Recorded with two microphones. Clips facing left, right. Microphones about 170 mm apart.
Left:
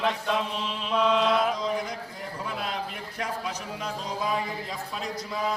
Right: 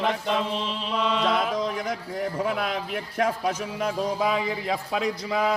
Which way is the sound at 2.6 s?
60° right (ahead or behind).